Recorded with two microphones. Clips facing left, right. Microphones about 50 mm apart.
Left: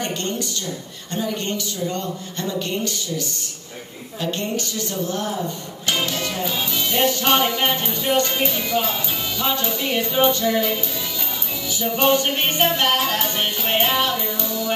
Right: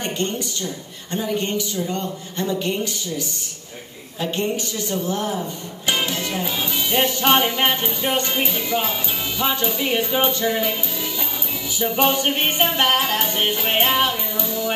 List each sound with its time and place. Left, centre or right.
0.0 s a sound: centre
1.1 s music: centre
11.8 s music: centre